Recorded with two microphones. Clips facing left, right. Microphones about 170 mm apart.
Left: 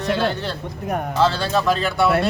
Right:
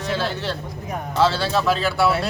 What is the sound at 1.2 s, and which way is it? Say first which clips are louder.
Speech: right 1 dB; 10° right (ahead or behind).